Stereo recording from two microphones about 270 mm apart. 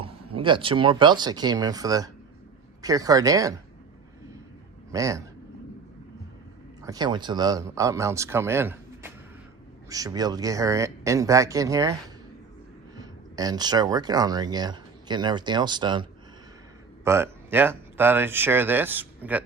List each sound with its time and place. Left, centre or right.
0.0 s speech: centre
4.9 s speech: centre
6.8 s speech: centre
13.0 s speech: centre